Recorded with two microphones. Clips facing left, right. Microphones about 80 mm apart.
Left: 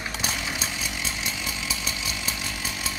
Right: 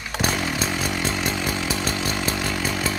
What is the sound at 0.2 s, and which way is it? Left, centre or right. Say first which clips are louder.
Chainsaw: right 10 dB; right.